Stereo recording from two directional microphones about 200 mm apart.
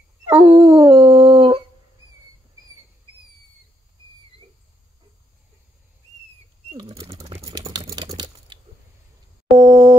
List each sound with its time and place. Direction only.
0.3 s dog: 15° right (ahead or behind)
6.7 s bird flight: 25° right (ahead or behind)
7.4 s typing: 20° right (ahead or behind)
9.6 s busy signal: 20° right (ahead or behind)